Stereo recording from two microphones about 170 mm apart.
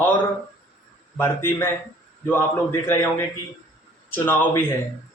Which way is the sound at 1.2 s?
15° left (ahead or behind).